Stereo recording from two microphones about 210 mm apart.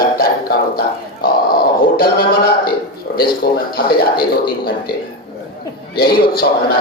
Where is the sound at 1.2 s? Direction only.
45° left (ahead or behind).